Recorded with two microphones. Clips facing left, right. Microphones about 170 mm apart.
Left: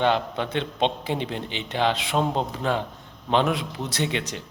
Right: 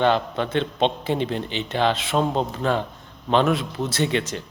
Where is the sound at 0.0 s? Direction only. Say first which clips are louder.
Right 2 dB; 15° left (ahead or behind).